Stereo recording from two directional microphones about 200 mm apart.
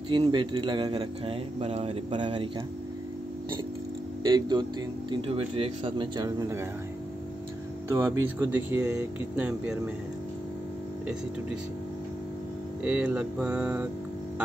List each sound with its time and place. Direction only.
0.1 s speech: 25° right (ahead or behind)
4.2 s speech: 20° right (ahead or behind)
7.9 s speech: 10° right (ahead or behind)
12.8 s mantra: 5° right (ahead or behind)